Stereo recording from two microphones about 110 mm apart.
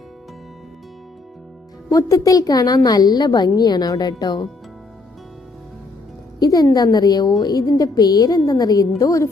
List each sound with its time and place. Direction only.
1.9 s a woman's voice: 30° left (ahead or behind)
6.4 s a woman's voice: 35° left (ahead or behind)